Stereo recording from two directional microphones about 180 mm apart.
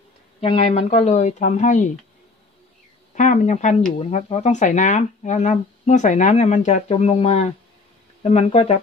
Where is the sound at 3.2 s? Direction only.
40° left (ahead or behind).